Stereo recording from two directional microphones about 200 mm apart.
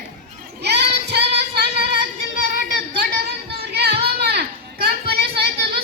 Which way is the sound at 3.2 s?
55° right (ahead or behind).